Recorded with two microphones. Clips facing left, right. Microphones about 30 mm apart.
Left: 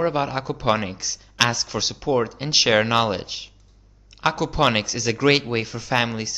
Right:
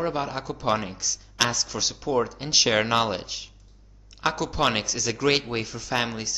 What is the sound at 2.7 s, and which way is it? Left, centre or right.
Speech, centre.